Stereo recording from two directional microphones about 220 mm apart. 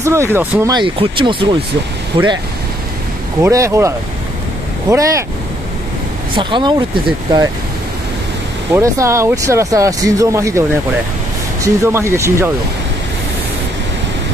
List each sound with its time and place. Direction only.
0.0 s speech: 15° right (ahead or behind)
3.4 s speech: 15° right (ahead or behind)
6.3 s speech: 20° right (ahead or behind)
8.7 s speech: 15° right (ahead or behind)
11.6 s speech: 15° right (ahead or behind)